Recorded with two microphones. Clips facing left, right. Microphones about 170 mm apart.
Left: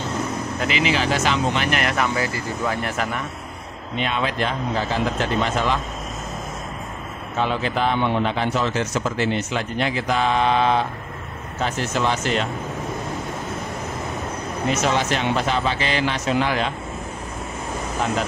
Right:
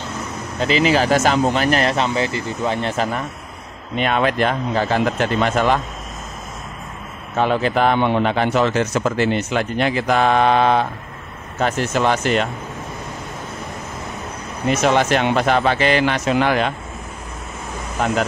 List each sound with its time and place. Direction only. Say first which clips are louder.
0.6 s speech: right 6 dB; 35° right (ahead or behind)
4.0 s speech: right 6 dB; 55° right (ahead or behind)
7.3 s speech: right 5 dB; 55° right (ahead or behind)
14.9 s speech: right 8 dB; 60° right (ahead or behind)